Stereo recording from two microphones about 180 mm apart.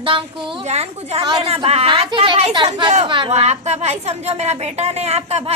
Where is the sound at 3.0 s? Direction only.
25° right (ahead or behind).